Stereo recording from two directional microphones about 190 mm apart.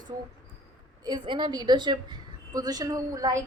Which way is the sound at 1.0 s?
25° right (ahead or behind).